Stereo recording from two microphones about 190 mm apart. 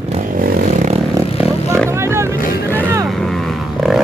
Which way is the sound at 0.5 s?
50° right (ahead or behind).